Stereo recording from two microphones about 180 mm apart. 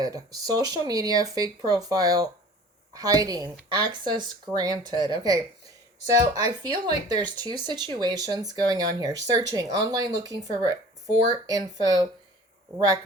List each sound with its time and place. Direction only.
0.0 s speech: 20° right (ahead or behind)